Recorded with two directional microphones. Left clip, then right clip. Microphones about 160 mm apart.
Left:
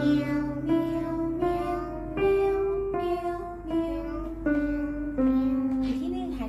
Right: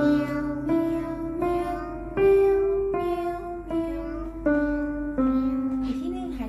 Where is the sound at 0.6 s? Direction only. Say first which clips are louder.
Right 3 dB; 35° right (ahead or behind).